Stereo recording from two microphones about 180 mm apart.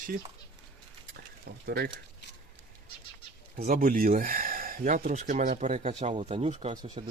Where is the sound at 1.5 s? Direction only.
55° right (ahead or behind).